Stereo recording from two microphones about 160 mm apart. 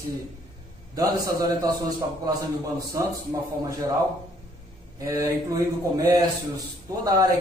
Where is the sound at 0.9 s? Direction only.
20° right (ahead or behind).